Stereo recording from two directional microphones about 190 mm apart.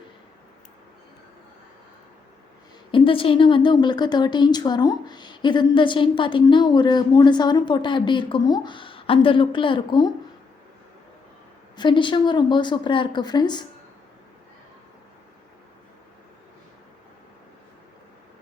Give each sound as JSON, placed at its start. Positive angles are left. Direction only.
{"t": 2.9, "sound": "speech", "side_deg": 30}
{"t": 11.8, "sound": "speech", "side_deg": 25}